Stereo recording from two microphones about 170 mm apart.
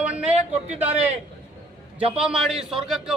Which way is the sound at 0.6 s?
40° right (ahead or behind).